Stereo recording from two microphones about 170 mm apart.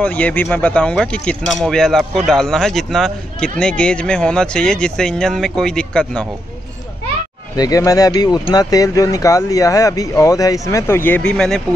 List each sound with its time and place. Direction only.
0.0 s speech: 10° left (ahead or behind)
7.5 s speech: 20° left (ahead or behind); by 11.6 s 5° left (ahead or behind)